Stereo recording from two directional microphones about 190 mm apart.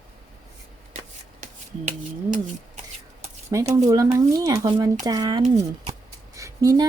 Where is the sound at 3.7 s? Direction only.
20° right (ahead or behind).